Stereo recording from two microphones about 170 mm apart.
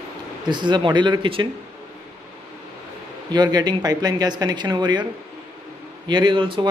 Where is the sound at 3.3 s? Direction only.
25° right (ahead or behind).